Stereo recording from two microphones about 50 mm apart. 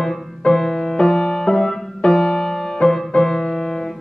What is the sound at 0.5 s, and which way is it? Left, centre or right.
Music, centre.